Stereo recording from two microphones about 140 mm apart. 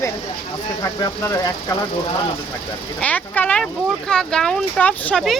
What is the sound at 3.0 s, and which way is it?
Speech, 10° left (ahead or behind).